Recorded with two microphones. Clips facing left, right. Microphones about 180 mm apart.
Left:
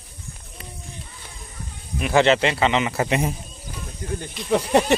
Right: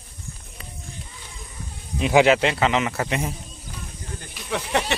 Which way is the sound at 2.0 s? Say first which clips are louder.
Right 1 dB; 15° right (ahead or behind).